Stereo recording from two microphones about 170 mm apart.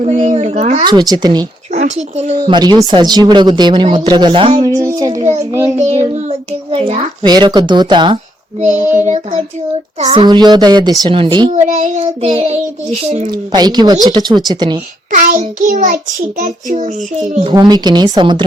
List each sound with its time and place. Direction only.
0.0 s child singing: 45° right (ahead or behind)
0.9 s speech: 25° right (ahead or behind)
1.7 s speech: 40° right (ahead or behind)
2.4 s a child's voice: 25° right (ahead or behind)
6.1 s speech: 35° right (ahead or behind)
8.6 s child singing: 45° right (ahead or behind)
10.1 s speech: 25° right (ahead or behind)
11.5 s child singing: 45° right (ahead or behind)
13.3 s speech: 25° right (ahead or behind)
15.1 s child singing: 50° right (ahead or behind)
17.5 s speech: 25° right (ahead or behind)